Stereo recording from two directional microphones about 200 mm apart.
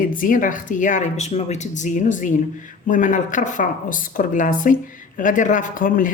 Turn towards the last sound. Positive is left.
turn(degrees=40)  # may be behind; listen again after turning